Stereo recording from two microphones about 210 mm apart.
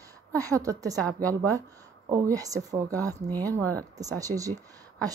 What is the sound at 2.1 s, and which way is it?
A woman's voice, 15° right (ahead or behind).